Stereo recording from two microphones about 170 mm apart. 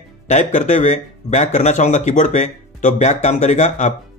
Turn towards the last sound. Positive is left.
turn(degrees=45)  # may be behind; listen again after turning